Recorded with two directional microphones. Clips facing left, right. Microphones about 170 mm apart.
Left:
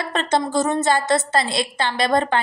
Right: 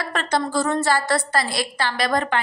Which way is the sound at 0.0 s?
25° left (ahead or behind).